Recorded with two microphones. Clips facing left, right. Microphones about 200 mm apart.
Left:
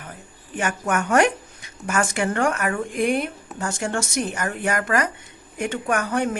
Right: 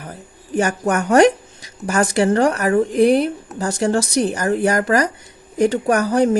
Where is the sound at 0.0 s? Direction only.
40° right (ahead or behind).